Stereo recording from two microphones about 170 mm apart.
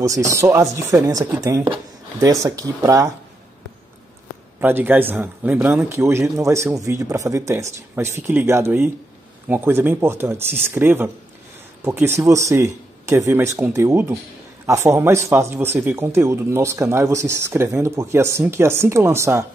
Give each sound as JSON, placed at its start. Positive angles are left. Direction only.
{"t": 0.0, "sound": "speech", "side_deg": -20}
{"t": 4.6, "sound": "speech", "side_deg": -10}